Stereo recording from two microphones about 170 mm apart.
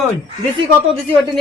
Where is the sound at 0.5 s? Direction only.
30° right (ahead or behind).